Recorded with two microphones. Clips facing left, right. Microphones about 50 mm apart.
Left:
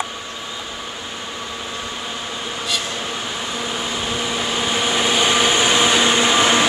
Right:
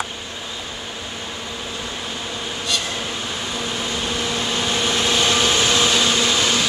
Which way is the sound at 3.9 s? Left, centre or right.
Centre.